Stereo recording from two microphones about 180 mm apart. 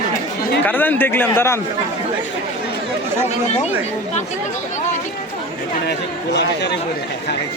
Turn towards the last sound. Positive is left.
turn(degrees=70)  # may be behind; listen again after turning